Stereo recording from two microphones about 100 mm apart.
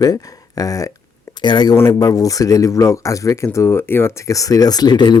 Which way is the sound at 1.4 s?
45° left (ahead or behind).